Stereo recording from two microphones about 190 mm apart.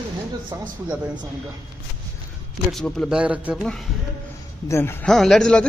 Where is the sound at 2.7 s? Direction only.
Centre (ahead or behind).